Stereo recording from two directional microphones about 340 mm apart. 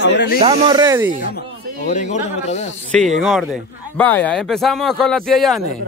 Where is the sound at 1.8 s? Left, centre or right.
Left.